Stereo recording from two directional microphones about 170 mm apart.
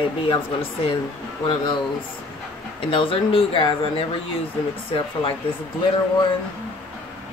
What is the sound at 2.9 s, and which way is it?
Speech, 30° left (ahead or behind).